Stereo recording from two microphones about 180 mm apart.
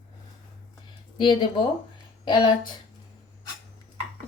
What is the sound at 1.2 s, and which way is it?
Speech, 25° left (ahead or behind).